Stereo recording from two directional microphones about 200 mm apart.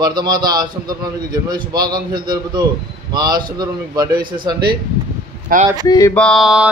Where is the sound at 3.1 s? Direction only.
20° right (ahead or behind).